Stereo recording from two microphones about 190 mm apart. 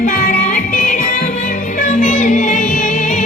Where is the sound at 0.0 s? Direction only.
50° left (ahead or behind).